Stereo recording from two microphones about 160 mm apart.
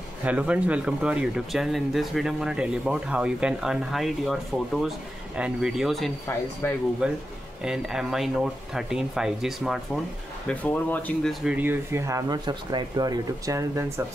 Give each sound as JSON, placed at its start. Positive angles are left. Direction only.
{"t": 0.2, "sound": "speech", "side_deg": -10}
{"t": 6.6, "sound": "speech", "side_deg": 15}
{"t": 7.0, "sound": "speech", "side_deg": -5}
{"t": 10.4, "sound": "speech", "side_deg": 10}
{"t": 11.4, "sound": "speech", "side_deg": -10}